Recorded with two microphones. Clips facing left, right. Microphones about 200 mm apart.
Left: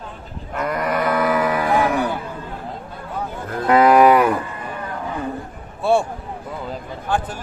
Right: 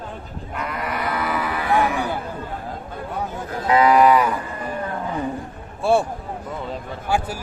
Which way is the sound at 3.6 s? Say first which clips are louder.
Left 3 dB; 55° left (ahead or behind).